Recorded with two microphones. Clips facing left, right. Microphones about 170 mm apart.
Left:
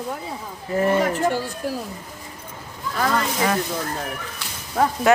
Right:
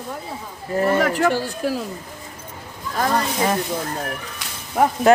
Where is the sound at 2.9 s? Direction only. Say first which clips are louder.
Right 1 dB; 35° right (ahead or behind).